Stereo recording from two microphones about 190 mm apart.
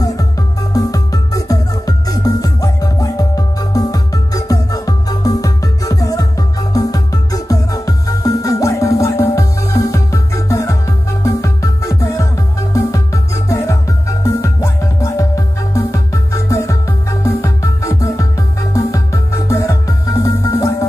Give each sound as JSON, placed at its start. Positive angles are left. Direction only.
{"t": 0.0, "sound": "music", "side_deg": 20}